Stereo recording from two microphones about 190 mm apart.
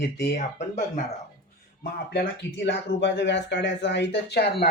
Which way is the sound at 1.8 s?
60° left (ahead or behind).